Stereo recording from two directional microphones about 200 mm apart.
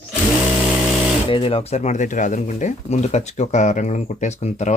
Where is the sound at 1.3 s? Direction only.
25° left (ahead or behind).